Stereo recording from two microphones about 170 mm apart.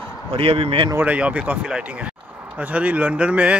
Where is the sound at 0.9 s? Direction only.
10° right (ahead or behind).